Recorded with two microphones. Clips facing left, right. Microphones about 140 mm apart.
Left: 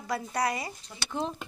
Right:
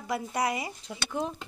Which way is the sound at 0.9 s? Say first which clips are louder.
Right 4 dB; 90° right.